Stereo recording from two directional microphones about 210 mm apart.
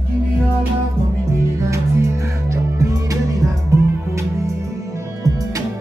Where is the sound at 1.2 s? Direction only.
15° right (ahead or behind).